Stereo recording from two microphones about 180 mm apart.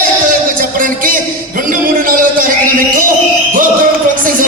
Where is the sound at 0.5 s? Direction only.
50° right (ahead or behind).